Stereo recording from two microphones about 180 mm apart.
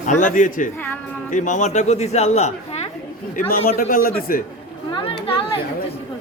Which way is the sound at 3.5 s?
55° left (ahead or behind).